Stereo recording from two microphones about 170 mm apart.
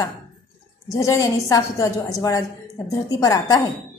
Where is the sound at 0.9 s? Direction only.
20° left (ahead or behind).